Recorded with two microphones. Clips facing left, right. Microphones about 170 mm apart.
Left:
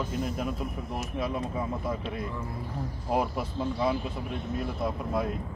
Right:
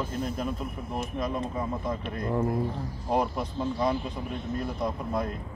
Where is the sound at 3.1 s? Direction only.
5° left (ahead or behind).